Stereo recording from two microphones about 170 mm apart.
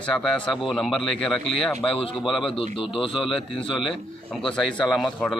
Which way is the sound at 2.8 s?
30° left (ahead or behind).